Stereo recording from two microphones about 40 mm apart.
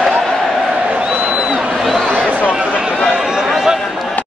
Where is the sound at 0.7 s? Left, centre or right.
Right.